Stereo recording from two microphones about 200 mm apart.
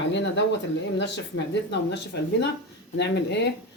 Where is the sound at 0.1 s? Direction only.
65° left (ahead or behind).